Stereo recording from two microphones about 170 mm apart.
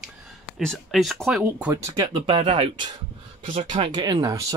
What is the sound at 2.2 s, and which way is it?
Speech, 35° right (ahead or behind).